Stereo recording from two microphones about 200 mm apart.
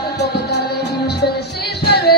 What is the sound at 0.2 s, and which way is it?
Music, 55° left (ahead or behind).